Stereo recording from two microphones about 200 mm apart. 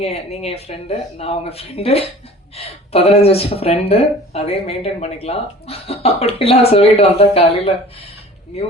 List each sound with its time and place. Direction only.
0.0 s speech: 30° left (ahead or behind)